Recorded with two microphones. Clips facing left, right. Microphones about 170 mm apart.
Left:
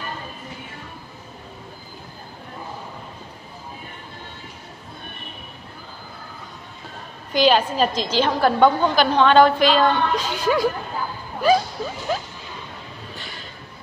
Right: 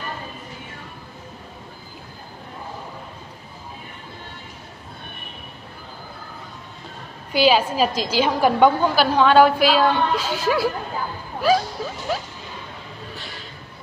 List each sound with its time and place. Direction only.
7.3 s a woman's voice: 5° right (ahead or behind)